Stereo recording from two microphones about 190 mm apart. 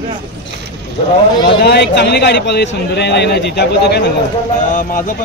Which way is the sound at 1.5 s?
60° left (ahead or behind).